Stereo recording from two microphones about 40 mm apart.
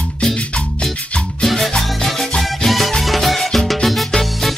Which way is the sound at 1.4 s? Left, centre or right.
Centre.